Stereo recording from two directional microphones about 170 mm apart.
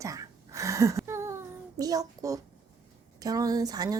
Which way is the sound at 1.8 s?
20° right (ahead or behind).